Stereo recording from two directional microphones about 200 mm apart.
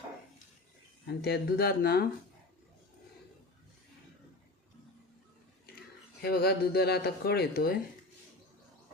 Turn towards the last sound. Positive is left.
turn(degrees=50)  # may be behind; listen again after turning